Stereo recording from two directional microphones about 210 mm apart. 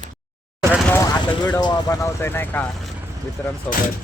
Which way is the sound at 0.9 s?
20° left (ahead or behind).